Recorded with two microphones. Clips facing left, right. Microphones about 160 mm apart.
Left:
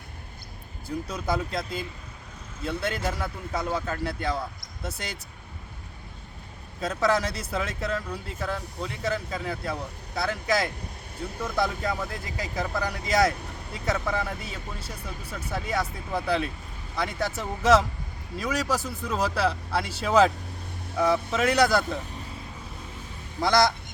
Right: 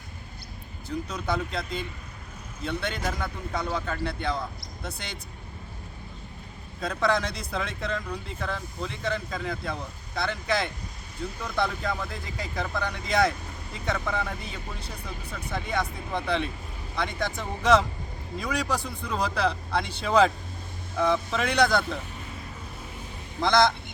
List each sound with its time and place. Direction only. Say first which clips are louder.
0.9 s speech: left 1 dB; 10° left (ahead or behind)
6.8 s speech: left 1 dB; 5° left (ahead or behind)
23.4 s speech: even; 10° left (ahead or behind)